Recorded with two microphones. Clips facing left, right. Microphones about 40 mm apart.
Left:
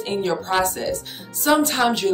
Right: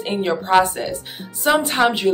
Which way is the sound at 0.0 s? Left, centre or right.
Right.